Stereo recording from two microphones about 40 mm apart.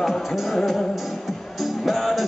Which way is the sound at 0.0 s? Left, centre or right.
Centre.